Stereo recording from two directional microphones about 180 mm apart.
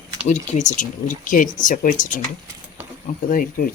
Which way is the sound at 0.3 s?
40° left (ahead or behind).